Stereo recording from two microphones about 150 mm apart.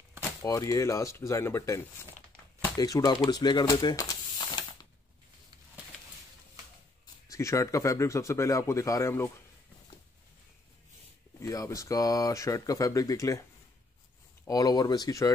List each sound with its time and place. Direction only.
0.4 s speech: 20° left (ahead or behind)
3.3 s a sound: 30° left (ahead or behind)
7.2 s speech: 20° left (ahead or behind)
11.4 s speech: 20° left (ahead or behind)